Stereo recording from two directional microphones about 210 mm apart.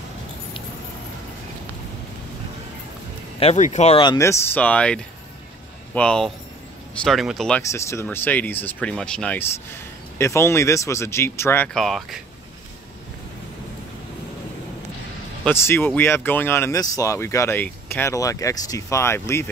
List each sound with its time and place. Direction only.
3.3 s speech: 30° left (ahead or behind); by 7.6 s centre (ahead or behind)
7.6 s speech: 15° left (ahead or behind)
15.4 s speech: 10° left (ahead or behind)